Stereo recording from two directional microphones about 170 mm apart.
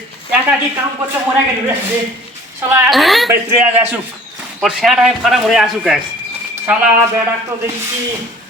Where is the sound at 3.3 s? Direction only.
10° right (ahead or behind).